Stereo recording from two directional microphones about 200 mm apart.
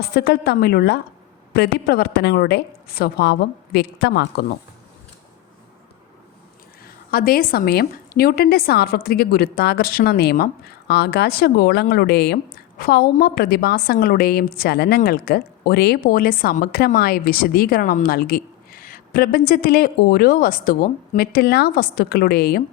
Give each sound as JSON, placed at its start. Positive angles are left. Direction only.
{"t": 0.0, "sound": "a woman's voice", "side_deg": 55}
{"t": 6.8, "sound": "a woman's voice", "side_deg": 45}